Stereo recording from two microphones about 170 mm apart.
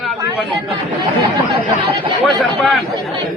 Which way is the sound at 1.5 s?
30° right (ahead or behind).